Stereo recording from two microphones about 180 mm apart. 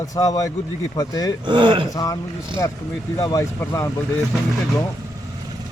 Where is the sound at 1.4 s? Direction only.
25° right (ahead or behind).